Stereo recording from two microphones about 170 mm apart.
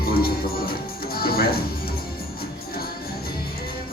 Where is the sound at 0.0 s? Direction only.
65° left (ahead or behind).